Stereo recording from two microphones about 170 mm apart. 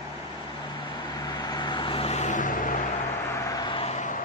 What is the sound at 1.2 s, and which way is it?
Vehicle, 25° left (ahead or behind).